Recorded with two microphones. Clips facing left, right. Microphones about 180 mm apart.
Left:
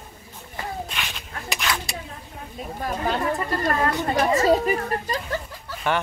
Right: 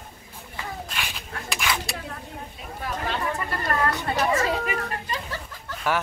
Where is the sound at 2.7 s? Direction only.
45° left (ahead or behind).